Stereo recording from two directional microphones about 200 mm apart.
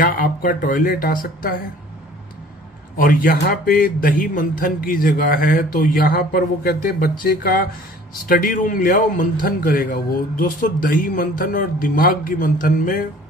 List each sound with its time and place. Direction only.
0.0 s a man's voice: 45° left (ahead or behind)
3.0 s a man's voice: 45° left (ahead or behind)